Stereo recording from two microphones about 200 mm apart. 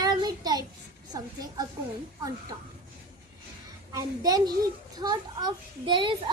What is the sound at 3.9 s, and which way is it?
A child's voice, 15° right (ahead or behind).